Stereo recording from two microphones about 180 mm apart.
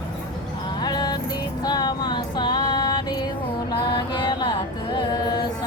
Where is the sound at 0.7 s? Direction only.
25° left (ahead or behind).